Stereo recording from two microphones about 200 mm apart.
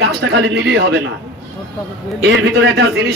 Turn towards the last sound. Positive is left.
turn(degrees=-55)  # may be behind; listen again after turning